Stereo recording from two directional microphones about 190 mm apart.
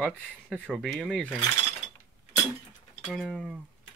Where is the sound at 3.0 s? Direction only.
Centre (ahead or behind).